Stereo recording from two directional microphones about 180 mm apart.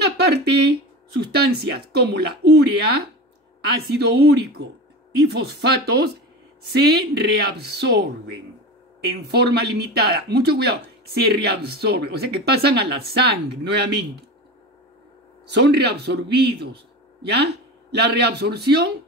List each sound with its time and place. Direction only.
0.0 s speech: 65° right (ahead or behind)
3.9 s speech: 65° right (ahead or behind)
15.4 s speech: 70° right (ahead or behind)